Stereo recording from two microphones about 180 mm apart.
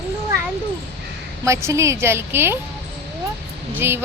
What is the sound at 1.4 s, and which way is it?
A woman's voice, 15° right (ahead or behind).